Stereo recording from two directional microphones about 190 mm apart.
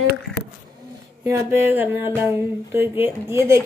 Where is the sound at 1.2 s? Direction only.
15° right (ahead or behind).